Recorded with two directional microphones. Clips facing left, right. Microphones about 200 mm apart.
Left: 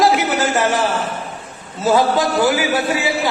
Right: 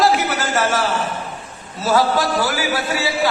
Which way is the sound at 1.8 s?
20° left (ahead or behind).